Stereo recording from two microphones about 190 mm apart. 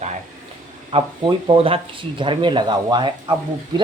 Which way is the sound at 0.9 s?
25° right (ahead or behind).